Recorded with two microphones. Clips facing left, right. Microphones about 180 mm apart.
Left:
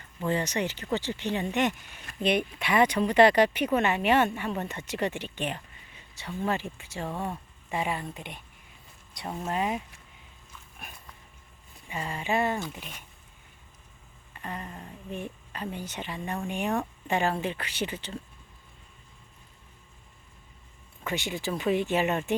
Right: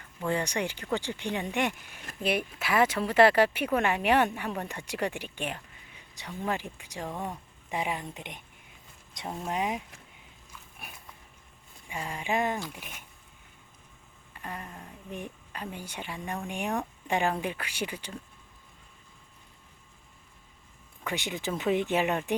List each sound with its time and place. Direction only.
0.2 s speech: 10° right (ahead or behind)
9.2 s speech: centre (ahead or behind)
11.9 s speech: 10° right (ahead or behind)
14.3 s a sound: 10° right (ahead or behind)
14.8 s speech: 15° right (ahead or behind)
21.0 s speech: 15° right (ahead or behind)